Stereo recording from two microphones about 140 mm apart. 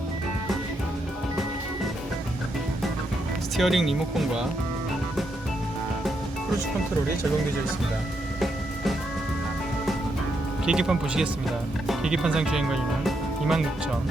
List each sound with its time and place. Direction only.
3.6 s speech: centre (ahead or behind)
8.4 s music: centre (ahead or behind)
10.7 s speech: 5° right (ahead or behind)